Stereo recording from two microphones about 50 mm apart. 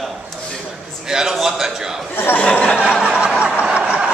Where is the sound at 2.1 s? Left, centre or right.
Left.